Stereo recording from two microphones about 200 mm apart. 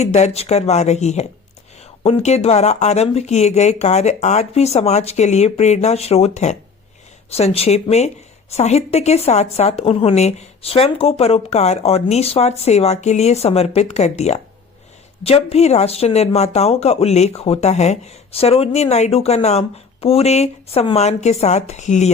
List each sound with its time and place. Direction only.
0.0 s speech: 35° left (ahead or behind)